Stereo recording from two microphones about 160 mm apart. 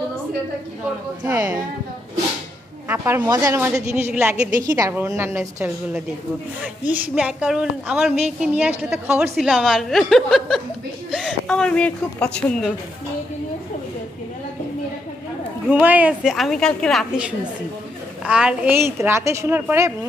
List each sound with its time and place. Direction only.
1.2 s a woman's voice: 15° right (ahead or behind)
3.2 s a woman's voice: 25° right (ahead or behind)
6.9 s a woman's voice: 5° right (ahead or behind)
15.7 s a woman's voice: 10° right (ahead or behind)
18.2 s a woman's voice: 5° right (ahead or behind)